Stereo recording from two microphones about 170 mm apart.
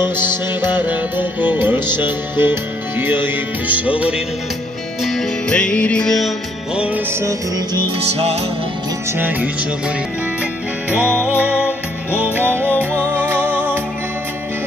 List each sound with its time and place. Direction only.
0.0 s music: 15° right (ahead or behind)
5.0 s music: 5° left (ahead or behind)
6.8 s music: 10° right (ahead or behind)
7.8 s music: 35° right (ahead or behind)
10.9 s music: 5° right (ahead or behind)